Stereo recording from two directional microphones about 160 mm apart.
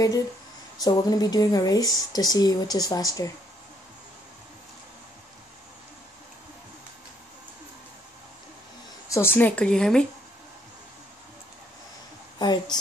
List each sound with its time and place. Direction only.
0.7 s speech: 25° left (ahead or behind)
9.1 s speech: 15° left (ahead or behind)
12.4 s speech: 25° left (ahead or behind)